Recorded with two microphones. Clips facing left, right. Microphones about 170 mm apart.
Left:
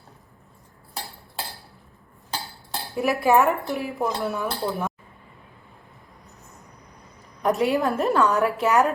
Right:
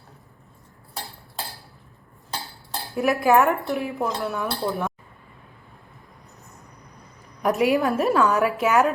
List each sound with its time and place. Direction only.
2.9 s a woman's voice: centre (ahead or behind)
7.4 s a woman's voice: 5° right (ahead or behind)